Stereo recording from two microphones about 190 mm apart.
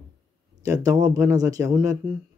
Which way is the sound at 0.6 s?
20° right (ahead or behind).